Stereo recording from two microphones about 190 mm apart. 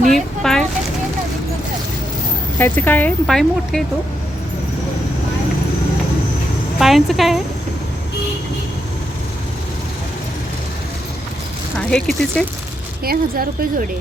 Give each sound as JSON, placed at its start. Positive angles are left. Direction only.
{"t": 0.1, "sound": "a sound", "side_deg": 5}
{"t": 2.6, "sound": "speech", "side_deg": 10}
{"t": 6.7, "sound": "speech", "side_deg": 0}
{"t": 11.8, "sound": "speech", "side_deg": 5}
{"t": 13.1, "sound": "speech", "side_deg": -50}